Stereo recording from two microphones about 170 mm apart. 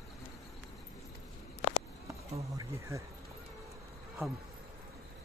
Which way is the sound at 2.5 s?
15° right (ahead or behind).